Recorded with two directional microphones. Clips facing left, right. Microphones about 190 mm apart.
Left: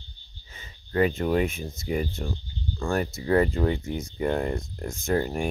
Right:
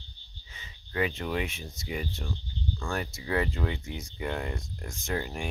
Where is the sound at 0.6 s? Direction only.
45° left (ahead or behind).